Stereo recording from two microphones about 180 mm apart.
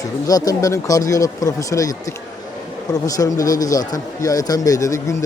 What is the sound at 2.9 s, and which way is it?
Speech, 20° left (ahead or behind).